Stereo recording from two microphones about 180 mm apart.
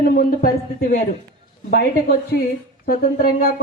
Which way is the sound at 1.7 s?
65° left (ahead or behind).